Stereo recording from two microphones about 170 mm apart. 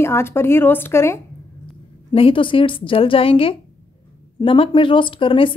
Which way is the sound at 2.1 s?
30° left (ahead or behind).